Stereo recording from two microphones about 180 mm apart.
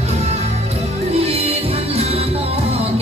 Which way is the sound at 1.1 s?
35° right (ahead or behind).